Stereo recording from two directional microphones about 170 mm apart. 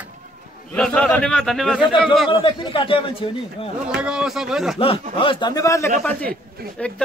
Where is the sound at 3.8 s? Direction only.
5° right (ahead or behind).